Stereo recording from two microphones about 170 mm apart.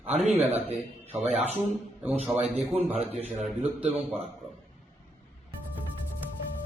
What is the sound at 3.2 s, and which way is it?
Speech, 5° right (ahead or behind).